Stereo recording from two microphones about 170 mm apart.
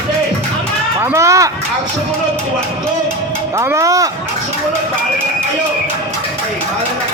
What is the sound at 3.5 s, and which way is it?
Speech, 15° right (ahead or behind).